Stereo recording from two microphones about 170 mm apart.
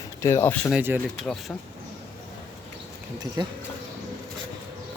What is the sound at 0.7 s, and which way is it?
Speech, 10° right (ahead or behind).